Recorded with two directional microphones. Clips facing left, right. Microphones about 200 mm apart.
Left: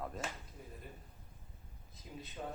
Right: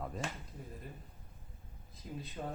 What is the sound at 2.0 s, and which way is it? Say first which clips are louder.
Speech: right 5 dB; 5° left (ahead or behind).